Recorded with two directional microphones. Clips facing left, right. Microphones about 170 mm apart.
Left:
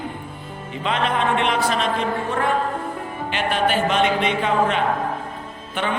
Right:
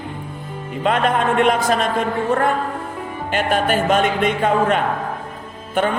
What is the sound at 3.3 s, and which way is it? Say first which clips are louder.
A man's voice: right 3 dB; 45° right (ahead or behind).